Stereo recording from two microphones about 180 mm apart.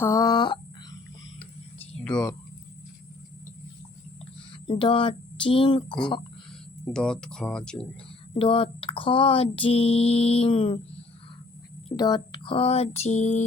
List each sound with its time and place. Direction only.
0.0 s a sound: 15° left (ahead or behind)
2.0 s speech: 5° left (ahead or behind)
4.6 s speech: 30° left (ahead or behind)
6.8 s speech: 5° left (ahead or behind)
8.3 s speech: 30° left (ahead or behind)
11.9 s speech: 25° left (ahead or behind); by 13.4 s 40° left (ahead or behind)